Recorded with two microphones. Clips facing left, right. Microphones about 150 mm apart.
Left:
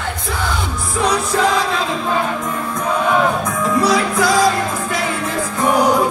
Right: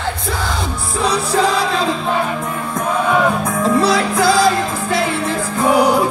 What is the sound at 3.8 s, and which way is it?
Music, 30° right (ahead or behind).